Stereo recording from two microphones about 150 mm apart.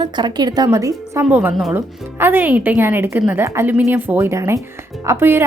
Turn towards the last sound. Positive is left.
turn(degrees=-15)  # may be behind; listen again after turning